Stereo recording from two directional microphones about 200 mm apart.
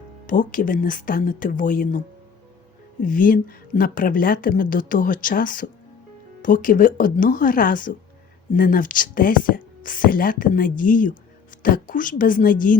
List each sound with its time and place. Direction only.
0.3 s a woman's voice: 40° left (ahead or behind)
3.0 s a woman's voice: 45° left (ahead or behind)